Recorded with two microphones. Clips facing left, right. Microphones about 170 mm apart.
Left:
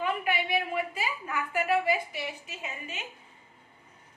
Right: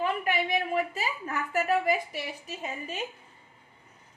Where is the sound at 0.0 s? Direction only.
40° right (ahead or behind).